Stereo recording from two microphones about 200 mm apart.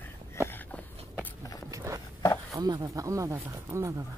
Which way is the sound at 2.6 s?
20° right (ahead or behind).